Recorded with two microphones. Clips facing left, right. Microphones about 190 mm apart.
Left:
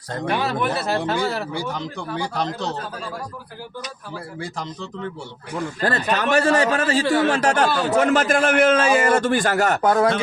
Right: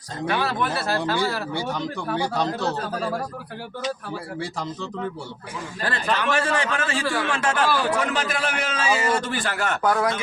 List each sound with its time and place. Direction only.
0.3 s speech: 20° left (ahead or behind)
4.4 s speech: centre (ahead or behind)
5.5 s a man's voice: 45° left (ahead or behind)
7.0 s speech: 20° left (ahead or behind)
7.3 s a man's voice: 40° left (ahead or behind)
7.7 s speech: 25° left (ahead or behind)
7.9 s a man's voice: 45° left (ahead or behind)
9.8 s speech: 25° left (ahead or behind)